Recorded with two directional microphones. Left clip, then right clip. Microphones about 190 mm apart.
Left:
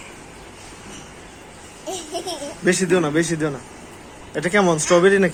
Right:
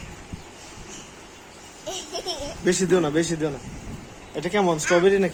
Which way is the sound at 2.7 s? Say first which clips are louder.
Left 3 dB; 10° right (ahead or behind).